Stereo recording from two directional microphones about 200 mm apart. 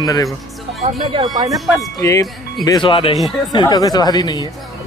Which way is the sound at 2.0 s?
15° left (ahead or behind).